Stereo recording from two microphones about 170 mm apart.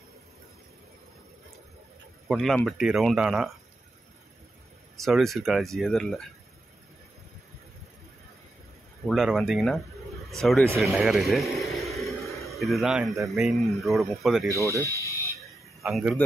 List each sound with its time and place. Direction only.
2.2 s speech: centre (ahead or behind)
4.9 s speech: centre (ahead or behind)
9.0 s speech: centre (ahead or behind)
10.8 s a sound: centre (ahead or behind)
13.3 s speech: centre (ahead or behind)
14.5 s speech: 20° right (ahead or behind)
14.8 s speech: 15° left (ahead or behind)
15.8 s speech: 5° right (ahead or behind)